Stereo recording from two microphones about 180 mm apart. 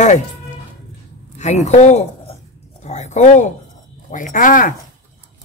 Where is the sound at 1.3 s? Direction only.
40° left (ahead or behind).